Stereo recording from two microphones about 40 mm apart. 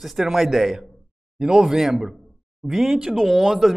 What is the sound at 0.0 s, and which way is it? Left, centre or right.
A man's voice, centre.